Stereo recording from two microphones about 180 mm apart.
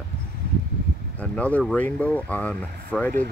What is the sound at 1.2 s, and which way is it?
Speech, 10° left (ahead or behind).